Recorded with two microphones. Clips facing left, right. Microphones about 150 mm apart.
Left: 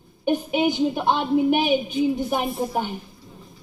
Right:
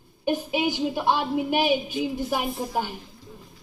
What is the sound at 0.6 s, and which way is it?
A woman's voice, 20° left (ahead or behind).